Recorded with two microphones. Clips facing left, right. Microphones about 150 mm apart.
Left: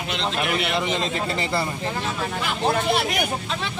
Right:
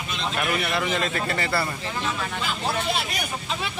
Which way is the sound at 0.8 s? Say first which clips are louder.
Left 1 dB; 20° left (ahead or behind).